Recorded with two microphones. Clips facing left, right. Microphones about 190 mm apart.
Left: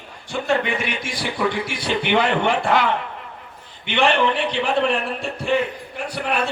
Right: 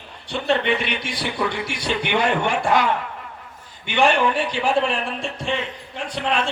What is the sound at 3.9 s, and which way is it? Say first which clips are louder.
Speech: even; 10° right (ahead or behind).